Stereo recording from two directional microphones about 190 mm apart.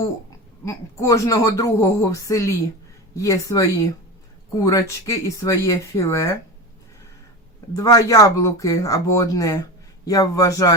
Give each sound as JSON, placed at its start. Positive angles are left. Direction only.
{"t": 0.6, "sound": "speech", "side_deg": 15}
{"t": 7.8, "sound": "speech", "side_deg": 20}